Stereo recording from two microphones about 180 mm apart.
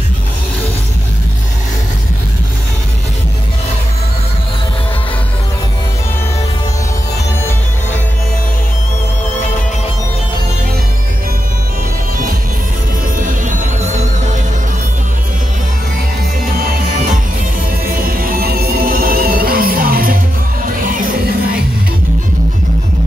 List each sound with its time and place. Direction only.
13.2 s music: 45° right (ahead or behind)
17.9 s music: 50° right (ahead or behind)